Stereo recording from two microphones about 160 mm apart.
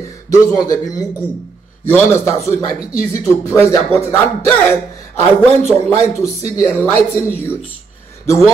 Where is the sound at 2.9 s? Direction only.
40° right (ahead or behind).